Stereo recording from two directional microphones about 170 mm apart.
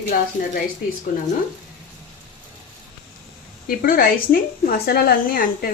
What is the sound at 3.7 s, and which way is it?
A woman's voice, 60° left (ahead or behind).